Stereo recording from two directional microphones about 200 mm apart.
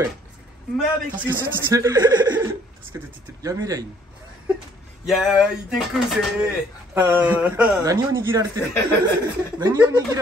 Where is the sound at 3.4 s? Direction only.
15° right (ahead or behind).